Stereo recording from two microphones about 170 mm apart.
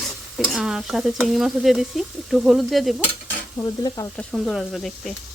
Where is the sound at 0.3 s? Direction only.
Centre (ahead or behind).